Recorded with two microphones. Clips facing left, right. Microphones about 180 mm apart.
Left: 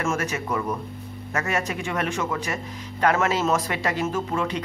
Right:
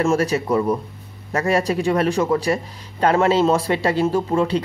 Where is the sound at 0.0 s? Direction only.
35° right (ahead or behind).